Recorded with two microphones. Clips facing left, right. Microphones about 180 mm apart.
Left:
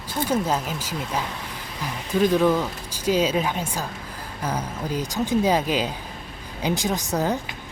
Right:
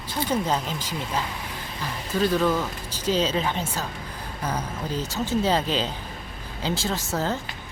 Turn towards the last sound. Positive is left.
turn(degrees=15)  # may be behind; listen again after turning